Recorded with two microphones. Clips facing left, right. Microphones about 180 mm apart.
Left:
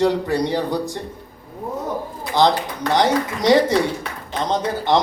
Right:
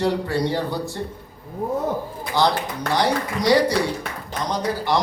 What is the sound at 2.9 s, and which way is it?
A man's voice, 20° left (ahead or behind).